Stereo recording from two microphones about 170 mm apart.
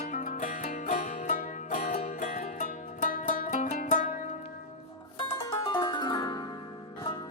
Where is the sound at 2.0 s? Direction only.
40° left (ahead or behind).